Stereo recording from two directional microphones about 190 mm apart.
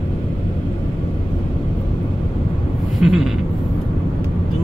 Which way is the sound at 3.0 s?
Centre (ahead or behind).